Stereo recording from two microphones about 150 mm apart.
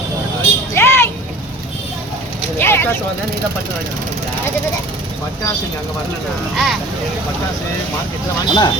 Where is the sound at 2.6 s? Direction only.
15° left (ahead or behind).